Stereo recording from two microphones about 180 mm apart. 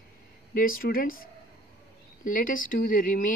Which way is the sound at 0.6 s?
50° left (ahead or behind).